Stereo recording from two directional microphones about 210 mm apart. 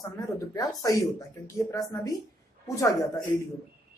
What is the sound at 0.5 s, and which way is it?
Speech, 15° left (ahead or behind).